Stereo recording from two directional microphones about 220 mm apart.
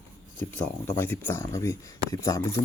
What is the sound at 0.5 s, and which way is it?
Speech, 10° left (ahead or behind).